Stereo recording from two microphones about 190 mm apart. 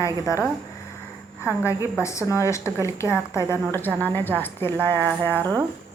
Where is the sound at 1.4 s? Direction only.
15° left (ahead or behind).